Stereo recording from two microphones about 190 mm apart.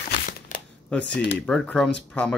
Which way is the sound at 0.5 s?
40° left (ahead or behind).